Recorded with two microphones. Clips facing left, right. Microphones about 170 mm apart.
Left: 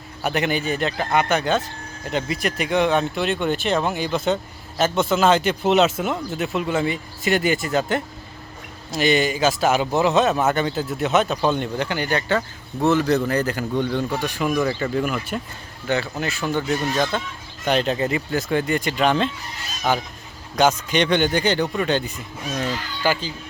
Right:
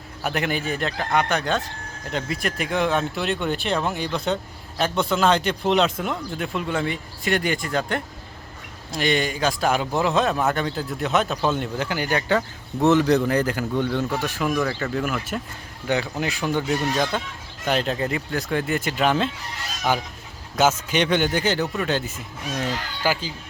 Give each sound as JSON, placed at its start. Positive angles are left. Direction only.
{"t": 0.2, "sound": "a man's voice", "side_deg": 0}
{"t": 13.7, "sound": "speech", "side_deg": 15}
{"t": 14.1, "sound": "a man's voice", "side_deg": -5}
{"t": 14.6, "sound": "speech", "side_deg": 15}
{"t": 14.9, "sound": "a man's voice", "side_deg": 0}
{"t": 15.9, "sound": "a man's voice", "side_deg": -15}